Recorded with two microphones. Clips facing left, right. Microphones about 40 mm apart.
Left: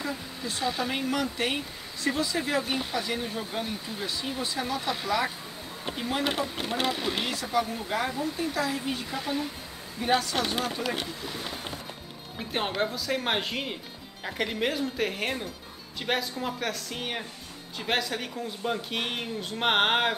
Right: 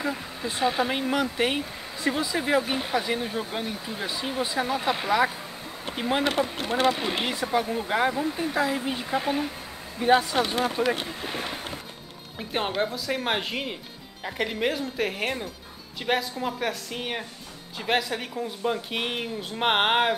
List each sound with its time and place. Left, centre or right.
0.0 s speech: right
6.3 s speech: centre; by 10.1 s right
10.3 s speech: centre
11.1 s speech: right
12.4 s speech: centre